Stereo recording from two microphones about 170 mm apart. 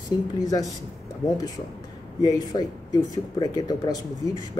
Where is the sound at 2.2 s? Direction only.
25° left (ahead or behind).